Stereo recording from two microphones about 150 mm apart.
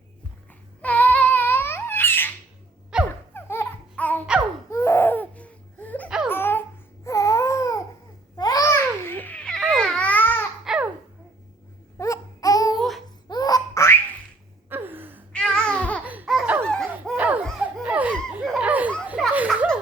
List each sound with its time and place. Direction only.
0.8 s babbling: 10° left (ahead or behind)
2.9 s a sound: 5° right (ahead or behind)
3.3 s a sound: 15° left (ahead or behind)
4.7 s laughter: 20° left (ahead or behind)
6.1 s laughter: 5° right (ahead or behind)
6.3 s baby cry: 15° left (ahead or behind)
8.4 s babbling: 25° left (ahead or behind)
10.6 s babbling: 5° right (ahead or behind)
11.9 s a sound: 20° left (ahead or behind)
14.7 s gasp: 15° right (ahead or behind)
15.3 s babbling: 5° left (ahead or behind)
16.0 s laughter: 5° right (ahead or behind)
17.2 s laughter: 10° right (ahead or behind)